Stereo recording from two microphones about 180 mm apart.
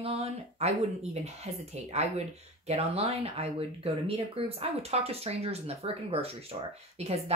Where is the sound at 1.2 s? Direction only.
35° right (ahead or behind).